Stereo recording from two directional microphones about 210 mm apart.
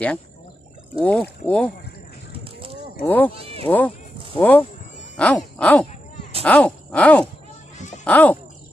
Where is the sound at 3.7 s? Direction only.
10° left (ahead or behind).